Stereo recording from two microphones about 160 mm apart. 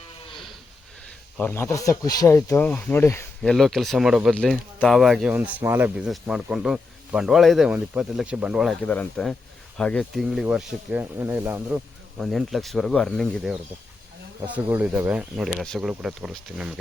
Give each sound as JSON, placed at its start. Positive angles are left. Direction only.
{"t": 0.3, "sound": "livestock", "side_deg": 0}
{"t": 1.4, "sound": "speech", "side_deg": 10}
{"t": 3.4, "sound": "speech", "side_deg": 5}
{"t": 8.8, "sound": "speech", "side_deg": 10}
{"t": 14.4, "sound": "speech", "side_deg": -10}